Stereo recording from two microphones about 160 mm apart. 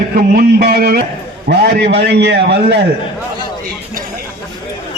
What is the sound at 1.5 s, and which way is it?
A man's voice, 90° right.